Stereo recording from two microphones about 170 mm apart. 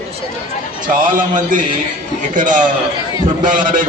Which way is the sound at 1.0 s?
50° right (ahead or behind).